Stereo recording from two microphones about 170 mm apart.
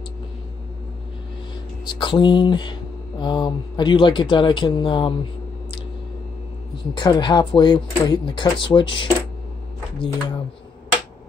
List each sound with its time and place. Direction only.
1.9 s speech: 25° left (ahead or behind)
6.9 s speech: 25° left (ahead or behind)